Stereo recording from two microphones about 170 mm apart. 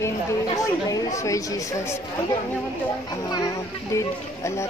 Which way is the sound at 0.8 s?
20° left (ahead or behind).